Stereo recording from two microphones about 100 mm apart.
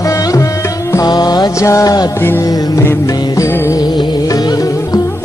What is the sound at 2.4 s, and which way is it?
Music, 35° left (ahead or behind).